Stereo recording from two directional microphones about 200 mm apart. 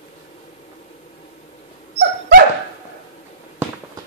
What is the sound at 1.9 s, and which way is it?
Dog, 55° right (ahead or behind).